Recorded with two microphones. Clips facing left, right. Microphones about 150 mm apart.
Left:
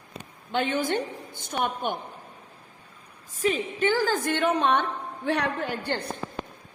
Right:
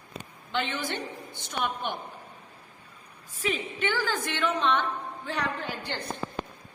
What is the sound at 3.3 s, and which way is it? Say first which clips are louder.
A woman's voice: left 5 dB; 45° left (ahead or behind).